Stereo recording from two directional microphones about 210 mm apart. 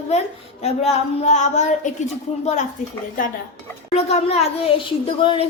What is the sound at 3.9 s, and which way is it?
A woman's voice, 30° left (ahead or behind).